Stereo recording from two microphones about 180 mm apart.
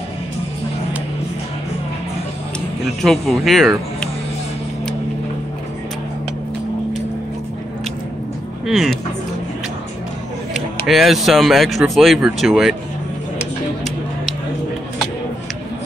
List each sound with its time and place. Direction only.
3.0 s speech: centre (ahead or behind)
8.6 s speech: centre (ahead or behind)
10.5 s speech: centre (ahead or behind)